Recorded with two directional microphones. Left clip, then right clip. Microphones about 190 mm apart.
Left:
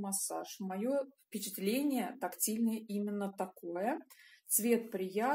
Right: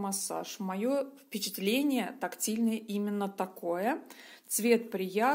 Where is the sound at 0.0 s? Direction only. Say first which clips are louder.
Right 5 dB; 30° right (ahead or behind).